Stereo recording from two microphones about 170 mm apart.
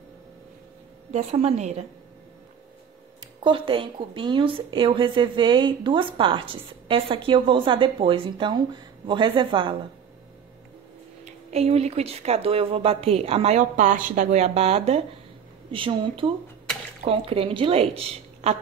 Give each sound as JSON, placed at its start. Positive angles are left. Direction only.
{"t": 1.1, "sound": "speech", "side_deg": -40}
{"t": 3.4, "sound": "a woman's voice", "side_deg": -30}
{"t": 11.2, "sound": "speech", "side_deg": -40}